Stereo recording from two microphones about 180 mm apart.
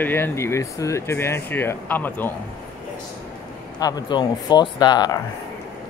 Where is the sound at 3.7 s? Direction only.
20° left (ahead or behind).